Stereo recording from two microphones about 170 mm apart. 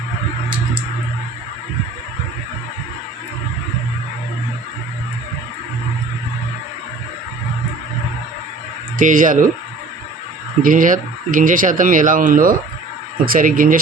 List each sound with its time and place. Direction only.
9.0 s speech: 50° right (ahead or behind)
10.6 s speech: 50° right (ahead or behind)